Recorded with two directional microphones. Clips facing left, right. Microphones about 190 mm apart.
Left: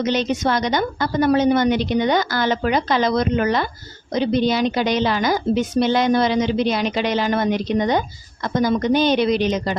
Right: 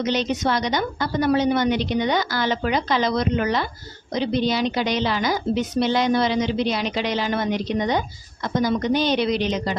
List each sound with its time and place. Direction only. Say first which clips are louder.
0.0 s a woman's voice: left 2 dB; 50° left (ahead or behind)